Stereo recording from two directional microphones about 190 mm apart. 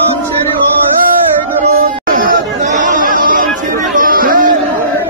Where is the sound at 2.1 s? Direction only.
45° right (ahead or behind).